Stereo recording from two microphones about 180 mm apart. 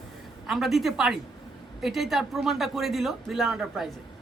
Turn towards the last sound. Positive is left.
turn(degrees=0)  # may be behind; listen again after turning